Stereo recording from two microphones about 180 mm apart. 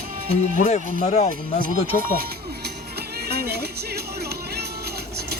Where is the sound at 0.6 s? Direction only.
40° left (ahead or behind).